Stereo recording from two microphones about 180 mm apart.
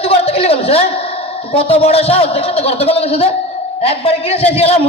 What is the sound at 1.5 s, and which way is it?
A man's voice, 35° left (ahead or behind).